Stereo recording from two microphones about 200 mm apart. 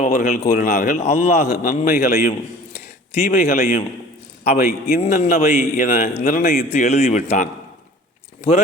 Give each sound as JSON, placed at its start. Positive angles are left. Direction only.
{"t": 0.0, "sound": "a man's voice", "side_deg": 45}
{"t": 0.7, "sound": "a man's voice", "side_deg": 35}
{"t": 1.5, "sound": "a man's voice", "side_deg": 45}
{"t": 2.7, "sound": "a man's voice", "side_deg": 35}
{"t": 5.4, "sound": "a man's voice", "side_deg": 35}
{"t": 6.3, "sound": "a man's voice", "side_deg": 45}
{"t": 6.7, "sound": "a man's voice", "side_deg": 35}